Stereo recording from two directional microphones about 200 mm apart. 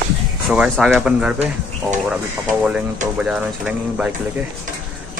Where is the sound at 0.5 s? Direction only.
5° right (ahead or behind).